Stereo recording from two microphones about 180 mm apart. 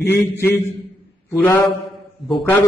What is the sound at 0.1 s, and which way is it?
Mantra, 10° left (ahead or behind).